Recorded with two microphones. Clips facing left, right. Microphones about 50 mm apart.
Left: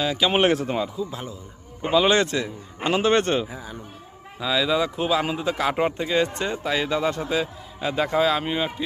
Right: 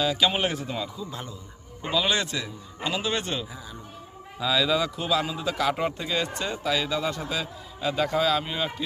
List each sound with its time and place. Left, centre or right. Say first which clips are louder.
0.0 s a man's voice: left 1 dB; left
0.3 s speech: left 8 dB; left
0.9 s speech: left 6 dB; centre
1.8 s a man's voice: left 7 dB; left
4.4 s speech: left 1 dB; centre
5.2 s a man's voice: left 2 dB; left